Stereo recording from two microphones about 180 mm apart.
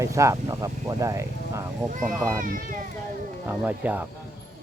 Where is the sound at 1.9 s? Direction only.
45° right (ahead or behind).